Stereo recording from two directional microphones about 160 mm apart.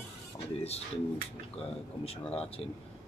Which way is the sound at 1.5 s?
40° left (ahead or behind).